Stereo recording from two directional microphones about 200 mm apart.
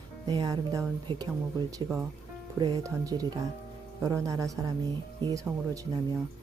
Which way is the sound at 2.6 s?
20° right (ahead or behind).